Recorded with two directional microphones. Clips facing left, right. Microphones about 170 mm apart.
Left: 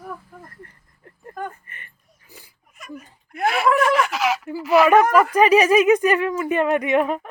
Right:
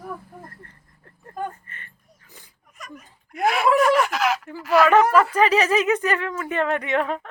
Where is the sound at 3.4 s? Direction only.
Centre (ahead or behind).